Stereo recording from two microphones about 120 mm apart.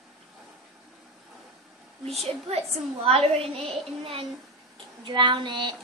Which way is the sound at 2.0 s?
60° right (ahead or behind).